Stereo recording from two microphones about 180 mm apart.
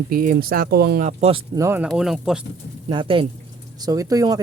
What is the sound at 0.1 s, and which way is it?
Speech, 50° right (ahead or behind).